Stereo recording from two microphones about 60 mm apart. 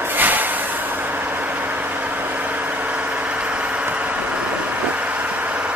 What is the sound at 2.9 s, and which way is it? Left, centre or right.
Vehicle, centre.